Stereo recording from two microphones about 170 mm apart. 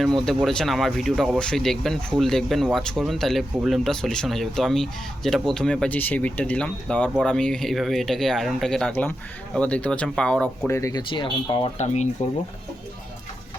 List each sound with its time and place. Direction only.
0.0 s speech: centre (ahead or behind)
10.7 s speech: 20° left (ahead or behind)
11.1 s speech: 30° left (ahead or behind)